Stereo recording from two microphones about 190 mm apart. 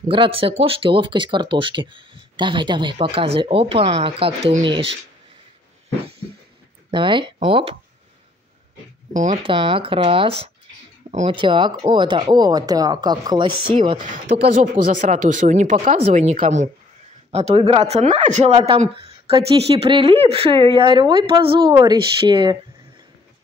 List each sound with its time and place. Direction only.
0.1 s speech: 25° right (ahead or behind)
6.9 s speech: 25° right (ahead or behind)
9.1 s speech: 40° right (ahead or behind)
9.4 s speech: 25° right (ahead or behind)
11.1 s speech: 40° right (ahead or behind)
11.3 s speech: 25° right (ahead or behind)
14.4 s speech: 40° right (ahead or behind); by 22.6 s 25° right (ahead or behind)